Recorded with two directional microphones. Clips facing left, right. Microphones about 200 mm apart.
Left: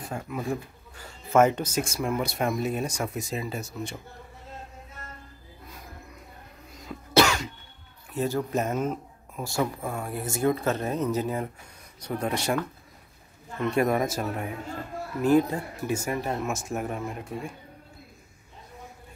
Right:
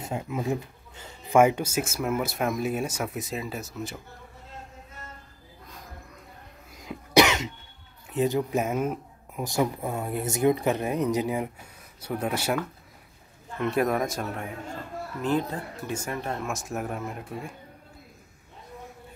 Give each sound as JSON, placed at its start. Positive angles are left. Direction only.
{"t": 0.0, "sound": "speech", "side_deg": -20}
{"t": 6.8, "sound": "cough", "side_deg": -15}
{"t": 8.1, "sound": "speech", "side_deg": -20}